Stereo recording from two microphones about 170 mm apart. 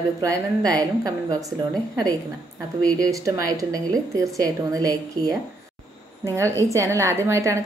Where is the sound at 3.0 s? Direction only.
20° right (ahead or behind).